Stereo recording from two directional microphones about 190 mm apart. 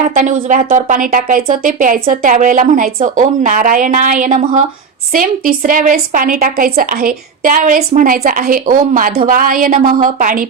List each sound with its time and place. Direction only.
0.1 s speech: 40° right (ahead or behind)